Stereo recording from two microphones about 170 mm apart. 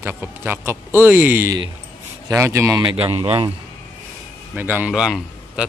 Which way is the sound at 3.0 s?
30° right (ahead or behind).